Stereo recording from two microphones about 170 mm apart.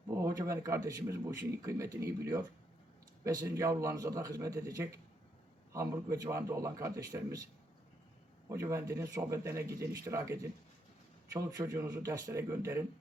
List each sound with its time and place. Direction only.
0.1 s a man's voice: 20° right (ahead or behind)
8.4 s a man's voice: 20° right (ahead or behind)
11.3 s a man's voice: 20° right (ahead or behind)